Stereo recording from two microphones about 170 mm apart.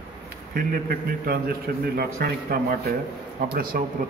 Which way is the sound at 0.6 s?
65° right (ahead or behind).